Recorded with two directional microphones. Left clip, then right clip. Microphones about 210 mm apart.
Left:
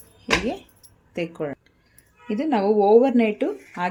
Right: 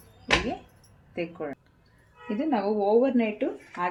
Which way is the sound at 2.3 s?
40° left (ahead or behind).